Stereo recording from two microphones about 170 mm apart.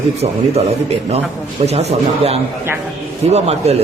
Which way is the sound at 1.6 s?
40° right (ahead or behind).